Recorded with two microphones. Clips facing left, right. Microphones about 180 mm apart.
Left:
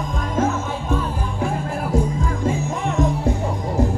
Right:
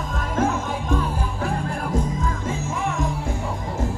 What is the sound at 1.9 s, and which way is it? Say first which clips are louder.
Music: left 4 dB; 10° left (ahead or behind).